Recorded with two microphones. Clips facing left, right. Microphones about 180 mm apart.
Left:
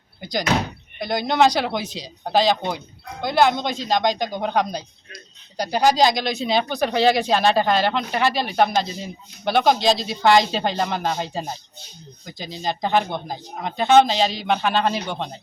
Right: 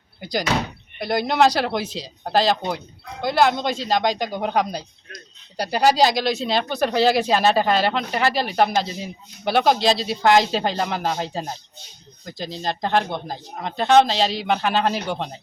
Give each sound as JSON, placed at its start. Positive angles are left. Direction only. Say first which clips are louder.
{"t": 0.2, "sound": "speech", "louder": "left 1 dB", "side_deg": -5}